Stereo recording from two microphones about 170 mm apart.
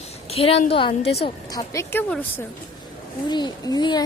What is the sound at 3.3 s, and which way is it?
Speech, 25° left (ahead or behind).